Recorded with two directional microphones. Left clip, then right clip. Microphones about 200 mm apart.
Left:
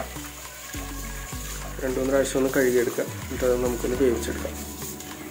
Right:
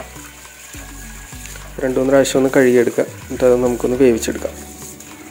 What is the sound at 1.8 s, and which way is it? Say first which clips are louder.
Speech: right 10 dB; 40° right (ahead or behind).